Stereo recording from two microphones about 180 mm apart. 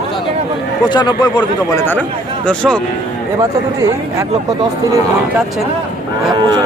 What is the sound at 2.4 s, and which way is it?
Speech, 5° left (ahead or behind).